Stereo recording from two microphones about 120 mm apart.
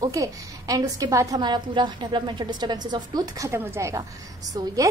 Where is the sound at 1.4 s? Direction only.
40° right (ahead or behind).